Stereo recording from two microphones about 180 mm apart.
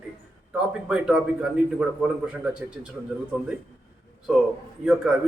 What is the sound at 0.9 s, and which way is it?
Speech, 5° right (ahead or behind).